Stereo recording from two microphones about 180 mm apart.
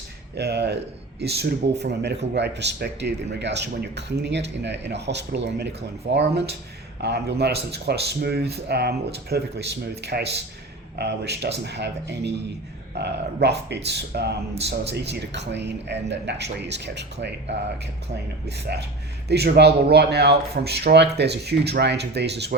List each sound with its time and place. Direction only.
0.3 s speech: 65° right (ahead or behind)
18.4 s speech: 65° right (ahead or behind)